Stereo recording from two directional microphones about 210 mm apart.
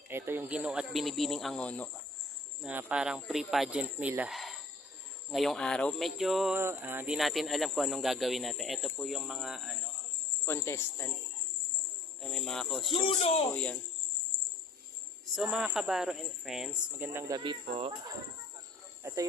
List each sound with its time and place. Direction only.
0.1 s speech: 10° right (ahead or behind); by 1.9 s 5° left (ahead or behind)
2.6 s speech: 5° right (ahead or behind)
10.4 s speech: 10° left (ahead or behind)
12.2 s speech: centre (ahead or behind)
12.9 s speech: 25° left (ahead or behind)
15.4 s speech: 5° right (ahead or behind); by 18.2 s 20° right (ahead or behind)